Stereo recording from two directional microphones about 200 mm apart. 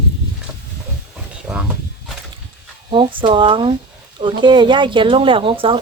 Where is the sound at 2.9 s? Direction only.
25° right (ahead or behind).